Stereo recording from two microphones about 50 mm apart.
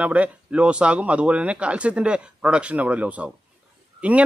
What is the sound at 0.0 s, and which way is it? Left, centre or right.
A man's voice, right.